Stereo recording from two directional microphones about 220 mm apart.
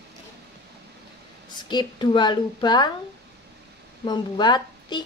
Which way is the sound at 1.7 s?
20° left (ahead or behind).